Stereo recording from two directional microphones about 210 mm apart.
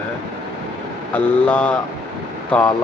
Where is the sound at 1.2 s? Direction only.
5° left (ahead or behind).